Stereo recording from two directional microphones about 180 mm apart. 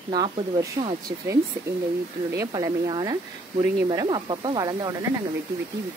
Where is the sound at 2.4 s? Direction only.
20° right (ahead or behind).